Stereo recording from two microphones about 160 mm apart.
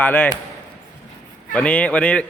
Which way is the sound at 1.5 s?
10° left (ahead or behind).